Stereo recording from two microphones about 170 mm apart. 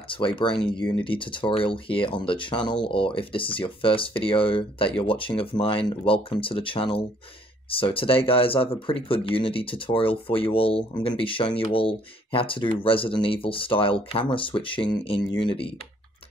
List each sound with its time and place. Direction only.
0.1 s speech: 30° left (ahead or behind)